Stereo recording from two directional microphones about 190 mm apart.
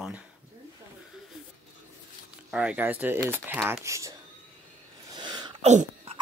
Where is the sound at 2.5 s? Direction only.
5° right (ahead or behind).